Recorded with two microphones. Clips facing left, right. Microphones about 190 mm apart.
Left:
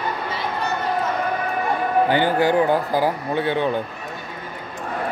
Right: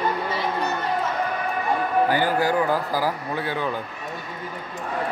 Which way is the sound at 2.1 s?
25° left (ahead or behind).